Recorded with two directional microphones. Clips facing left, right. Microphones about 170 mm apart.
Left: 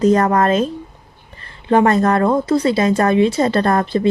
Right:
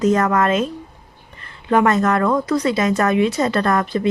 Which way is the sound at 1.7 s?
30° left (ahead or behind).